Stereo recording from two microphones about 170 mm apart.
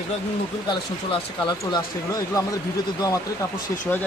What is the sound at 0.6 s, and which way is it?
Speech, 25° left (ahead or behind).